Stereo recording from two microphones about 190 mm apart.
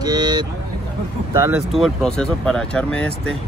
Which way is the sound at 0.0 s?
20° right (ahead or behind).